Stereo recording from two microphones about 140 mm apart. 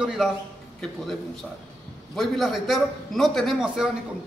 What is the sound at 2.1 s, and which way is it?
A man's voice, centre (ahead or behind).